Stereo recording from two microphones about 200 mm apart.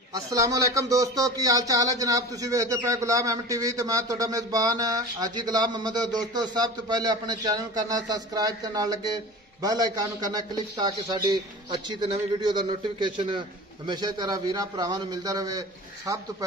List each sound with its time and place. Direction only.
0.1 s speech: 15° right (ahead or behind)